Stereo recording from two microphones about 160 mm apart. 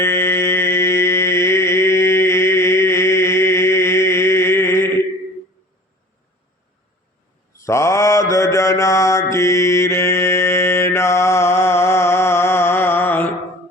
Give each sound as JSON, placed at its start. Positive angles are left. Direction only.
{"t": 0.0, "sound": "mantra", "side_deg": 15}
{"t": 7.5, "sound": "mantra", "side_deg": 20}